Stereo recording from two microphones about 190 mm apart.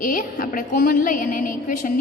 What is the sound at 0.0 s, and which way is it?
A woman's voice, 45° left (ahead or behind).